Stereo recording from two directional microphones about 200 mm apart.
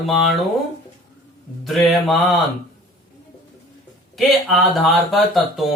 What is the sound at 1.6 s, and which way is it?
Speech, centre (ahead or behind).